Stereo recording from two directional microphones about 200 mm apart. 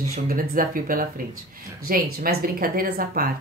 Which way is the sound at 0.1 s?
45° right (ahead or behind).